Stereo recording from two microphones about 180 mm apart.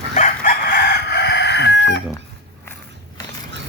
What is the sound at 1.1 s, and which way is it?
Chicken, 70° left (ahead or behind).